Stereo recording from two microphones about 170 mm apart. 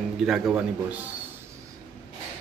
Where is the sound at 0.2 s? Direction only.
5° right (ahead or behind).